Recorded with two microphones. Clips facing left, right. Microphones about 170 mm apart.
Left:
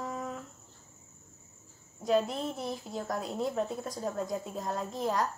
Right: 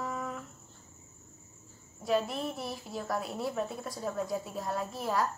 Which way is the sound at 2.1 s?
20° left (ahead or behind).